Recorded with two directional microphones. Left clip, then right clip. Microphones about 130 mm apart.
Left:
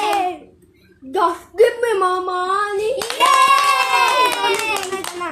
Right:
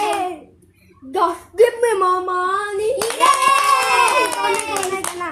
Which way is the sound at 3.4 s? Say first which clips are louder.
Even; 15° left (ahead or behind).